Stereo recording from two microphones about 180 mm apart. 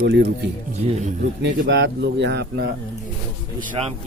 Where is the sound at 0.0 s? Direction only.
60° right (ahead or behind).